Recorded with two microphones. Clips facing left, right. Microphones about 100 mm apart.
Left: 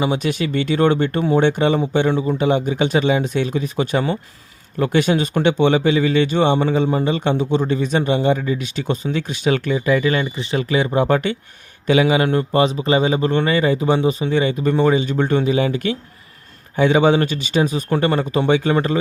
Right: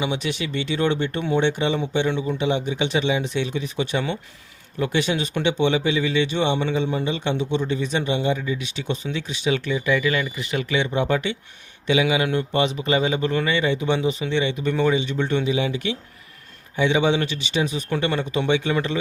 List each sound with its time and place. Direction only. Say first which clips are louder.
0.0 s a man's voice: left 6 dB; 45° left (ahead or behind)